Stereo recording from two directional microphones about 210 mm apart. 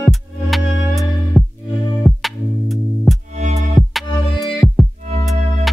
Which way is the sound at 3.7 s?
Centre (ahead or behind).